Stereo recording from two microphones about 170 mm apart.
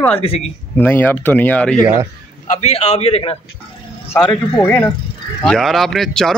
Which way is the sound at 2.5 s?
40° left (ahead or behind).